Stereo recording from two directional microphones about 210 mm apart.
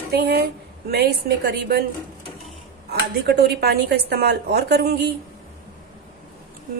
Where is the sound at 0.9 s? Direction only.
50° right (ahead or behind).